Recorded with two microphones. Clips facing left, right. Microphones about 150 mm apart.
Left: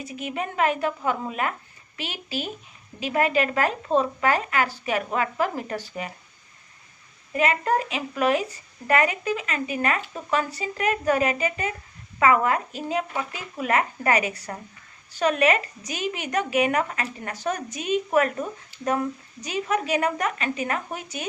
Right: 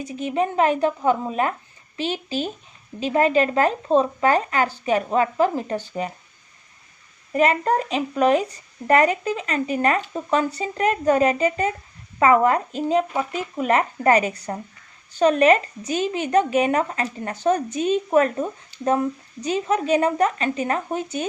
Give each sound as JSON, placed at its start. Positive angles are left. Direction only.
{"t": 0.1, "sound": "speech", "side_deg": -30}
{"t": 7.3, "sound": "a woman's voice", "side_deg": -35}